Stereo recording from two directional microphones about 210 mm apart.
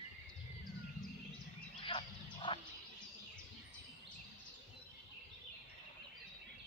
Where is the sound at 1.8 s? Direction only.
25° left (ahead or behind).